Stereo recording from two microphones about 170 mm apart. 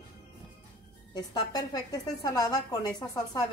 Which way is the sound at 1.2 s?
20° left (ahead or behind).